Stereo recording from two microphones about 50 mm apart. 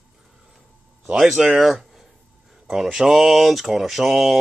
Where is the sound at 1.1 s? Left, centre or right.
Centre.